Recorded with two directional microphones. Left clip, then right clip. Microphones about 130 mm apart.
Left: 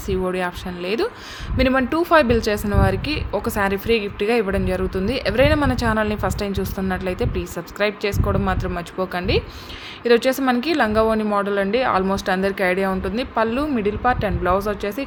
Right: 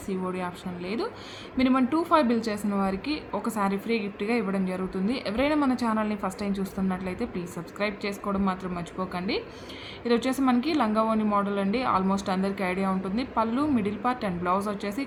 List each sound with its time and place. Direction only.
0.1 s a woman's voice: 50° left (ahead or behind); by 15.0 s 30° left (ahead or behind)